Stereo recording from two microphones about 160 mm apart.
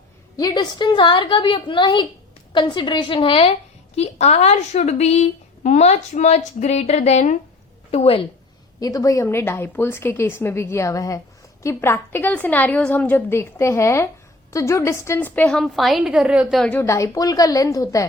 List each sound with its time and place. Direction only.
0.3 s a woman's voice: 25° left (ahead or behind)
8.8 s a woman's voice: 20° left (ahead or behind); by 16.7 s centre (ahead or behind)
16.7 s a woman's voice: 15° left (ahead or behind)